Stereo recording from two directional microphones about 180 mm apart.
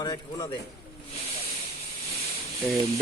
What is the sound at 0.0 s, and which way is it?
Speech, 20° left (ahead or behind).